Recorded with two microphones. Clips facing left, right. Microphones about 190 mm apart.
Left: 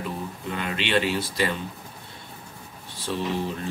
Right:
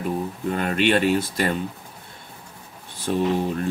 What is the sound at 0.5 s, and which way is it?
Speech, 45° right (ahead or behind).